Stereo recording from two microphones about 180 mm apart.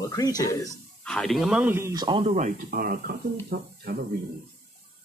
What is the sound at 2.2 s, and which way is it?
Speech, 40° right (ahead or behind).